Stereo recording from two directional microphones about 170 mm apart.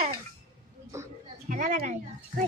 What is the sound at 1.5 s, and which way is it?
Speech, 50° right (ahead or behind).